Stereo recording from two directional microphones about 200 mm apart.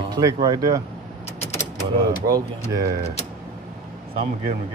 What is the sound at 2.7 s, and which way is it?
Speech, 15° right (ahead or behind).